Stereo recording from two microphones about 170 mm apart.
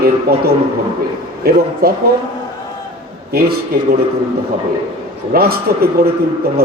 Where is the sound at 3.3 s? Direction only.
65° right (ahead or behind).